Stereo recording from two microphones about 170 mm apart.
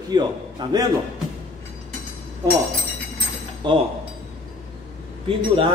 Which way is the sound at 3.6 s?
25° right (ahead or behind).